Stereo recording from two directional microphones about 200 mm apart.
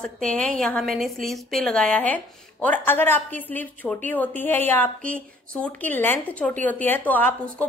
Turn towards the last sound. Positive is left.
turn(degrees=5)  # may be behind; listen again after turning